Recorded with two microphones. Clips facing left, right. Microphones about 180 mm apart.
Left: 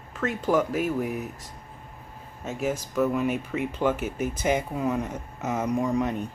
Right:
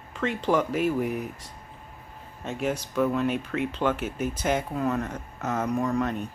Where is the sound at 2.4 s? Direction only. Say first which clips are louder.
Even; 5° left (ahead or behind).